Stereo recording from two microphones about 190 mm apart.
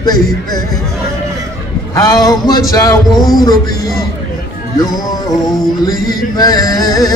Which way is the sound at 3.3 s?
20° left (ahead or behind).